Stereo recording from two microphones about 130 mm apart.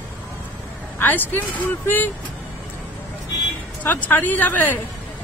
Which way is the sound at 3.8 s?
15° left (ahead or behind).